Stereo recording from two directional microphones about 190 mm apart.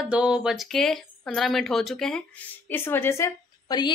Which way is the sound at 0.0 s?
5° right (ahead or behind).